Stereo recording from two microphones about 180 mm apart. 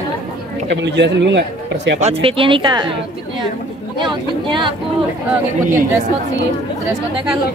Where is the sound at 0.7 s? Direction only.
75° right (ahead or behind).